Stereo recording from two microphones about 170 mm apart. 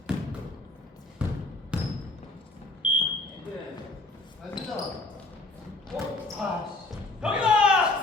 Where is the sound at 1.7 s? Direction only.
5° right (ahead or behind).